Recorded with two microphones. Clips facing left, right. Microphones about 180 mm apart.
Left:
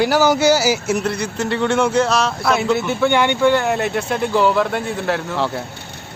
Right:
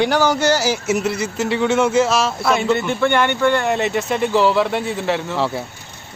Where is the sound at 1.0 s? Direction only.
5° right (ahead or behind).